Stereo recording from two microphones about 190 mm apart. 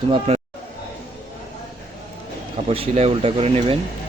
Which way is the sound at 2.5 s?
30° right (ahead or behind).